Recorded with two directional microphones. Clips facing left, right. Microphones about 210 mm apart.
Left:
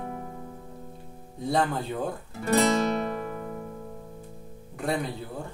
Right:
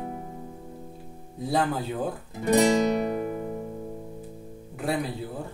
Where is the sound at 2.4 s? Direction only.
15° right (ahead or behind).